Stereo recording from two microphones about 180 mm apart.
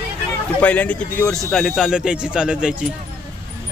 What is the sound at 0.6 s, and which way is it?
A man's voice, 5° left (ahead or behind).